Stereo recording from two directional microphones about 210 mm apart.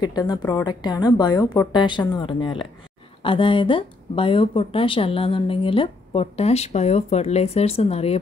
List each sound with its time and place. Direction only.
0.0 s speech: 20° left (ahead or behind)